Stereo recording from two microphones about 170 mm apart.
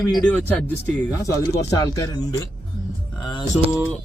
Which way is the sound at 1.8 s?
25° left (ahead or behind).